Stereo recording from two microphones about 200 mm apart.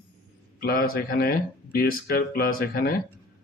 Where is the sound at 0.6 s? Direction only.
45° left (ahead or behind).